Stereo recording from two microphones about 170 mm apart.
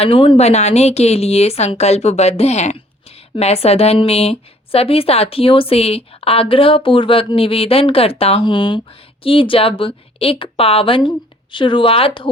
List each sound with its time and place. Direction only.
0.0 s a woman's voice: 30° left (ahead or behind)